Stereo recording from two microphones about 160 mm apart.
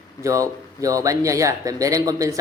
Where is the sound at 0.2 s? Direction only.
20° right (ahead or behind).